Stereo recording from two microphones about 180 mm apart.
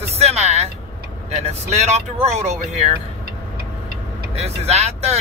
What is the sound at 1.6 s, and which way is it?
Speech, 35° right (ahead or behind).